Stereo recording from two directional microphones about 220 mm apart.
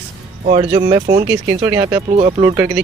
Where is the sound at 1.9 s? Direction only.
25° right (ahead or behind).